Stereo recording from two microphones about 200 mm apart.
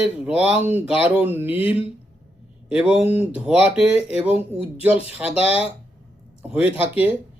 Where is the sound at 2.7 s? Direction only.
5° right (ahead or behind).